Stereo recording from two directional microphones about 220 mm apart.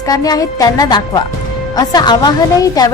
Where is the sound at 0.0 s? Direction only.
15° left (ahead or behind).